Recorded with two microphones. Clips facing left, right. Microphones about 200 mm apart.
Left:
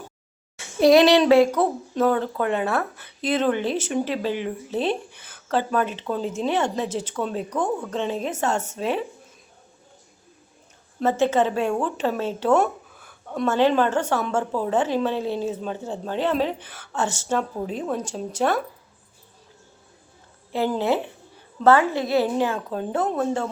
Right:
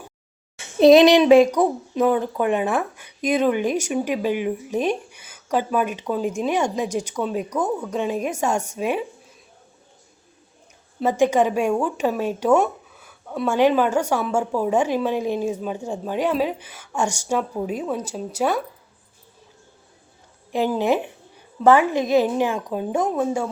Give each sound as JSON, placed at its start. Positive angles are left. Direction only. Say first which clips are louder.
{"t": 0.6, "sound": "child singing", "louder": "right 3 dB", "side_deg": -20}
{"t": 1.5, "sound": "a woman's voice", "louder": "right 2 dB", "side_deg": -15}
{"t": 11.0, "sound": "a woman's voice", "louder": "right 2 dB", "side_deg": -15}
{"t": 20.5, "sound": "a woman's voice", "louder": "right 2 dB", "side_deg": -15}